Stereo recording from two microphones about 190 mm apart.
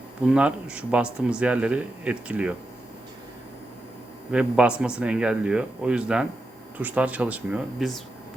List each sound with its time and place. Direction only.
0.2 s speech: 5° right (ahead or behind)
4.3 s speech: 5° right (ahead or behind)